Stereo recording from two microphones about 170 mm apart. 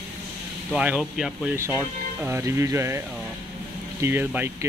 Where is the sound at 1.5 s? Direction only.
15° right (ahead or behind).